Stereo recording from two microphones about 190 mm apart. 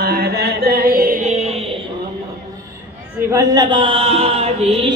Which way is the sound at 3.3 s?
15° right (ahead or behind).